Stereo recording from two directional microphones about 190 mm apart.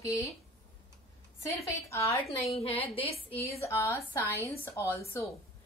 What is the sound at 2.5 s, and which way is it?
Speech, 30° left (ahead or behind).